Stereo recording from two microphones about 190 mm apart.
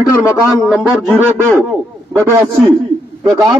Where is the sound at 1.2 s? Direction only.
10° right (ahead or behind).